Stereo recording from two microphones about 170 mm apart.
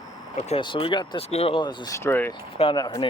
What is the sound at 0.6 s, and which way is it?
Speech, 30° left (ahead or behind).